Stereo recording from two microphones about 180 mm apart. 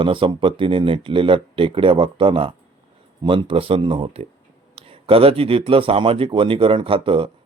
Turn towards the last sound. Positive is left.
turn(degrees=-30)  # may be behind; listen again after turning